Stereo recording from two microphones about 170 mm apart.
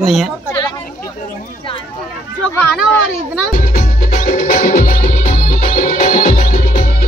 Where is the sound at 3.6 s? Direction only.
50° left (ahead or behind).